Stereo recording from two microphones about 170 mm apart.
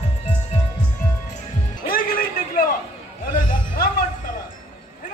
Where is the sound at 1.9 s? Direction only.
60° left (ahead or behind).